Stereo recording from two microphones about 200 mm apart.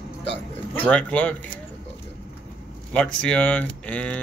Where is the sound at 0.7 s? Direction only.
5° left (ahead or behind).